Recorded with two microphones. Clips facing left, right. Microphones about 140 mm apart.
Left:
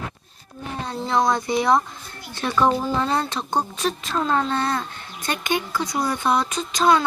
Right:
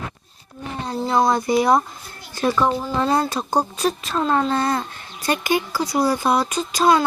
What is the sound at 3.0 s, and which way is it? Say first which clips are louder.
Speech: right 3 dB; 35° right (ahead or behind).